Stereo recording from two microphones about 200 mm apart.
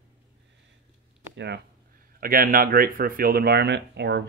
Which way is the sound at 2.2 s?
45° right (ahead or behind).